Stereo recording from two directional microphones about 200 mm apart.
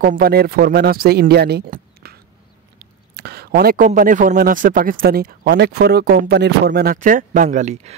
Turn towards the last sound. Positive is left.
turn(degrees=-35)  # may be behind; listen again after turning